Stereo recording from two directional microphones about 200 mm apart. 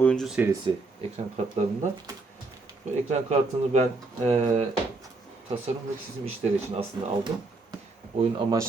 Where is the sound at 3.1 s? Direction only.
35° right (ahead or behind).